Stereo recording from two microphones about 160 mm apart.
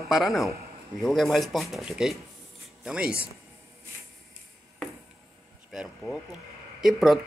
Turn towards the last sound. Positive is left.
turn(degrees=0)  # may be behind; listen again after turning